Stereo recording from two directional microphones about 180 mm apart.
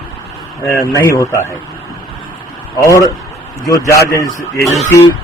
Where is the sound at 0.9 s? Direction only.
15° left (ahead or behind).